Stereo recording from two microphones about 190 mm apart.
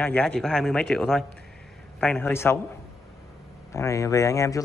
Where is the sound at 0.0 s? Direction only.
5° left (ahead or behind).